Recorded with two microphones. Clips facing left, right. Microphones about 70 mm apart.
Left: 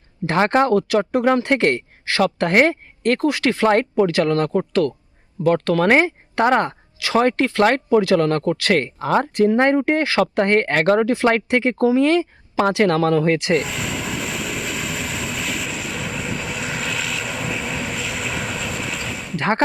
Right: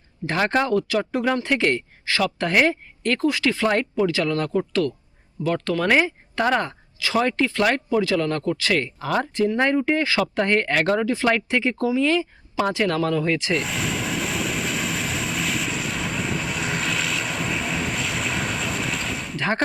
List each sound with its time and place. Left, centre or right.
0.3 s speech: left
7.6 s speech: left
9.0 s speech: left
9.6 s speech: left
13.6 s vehicle: centre